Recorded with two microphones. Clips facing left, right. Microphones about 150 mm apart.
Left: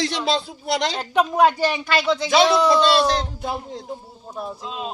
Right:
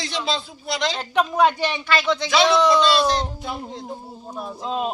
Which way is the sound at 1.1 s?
5° left (ahead or behind).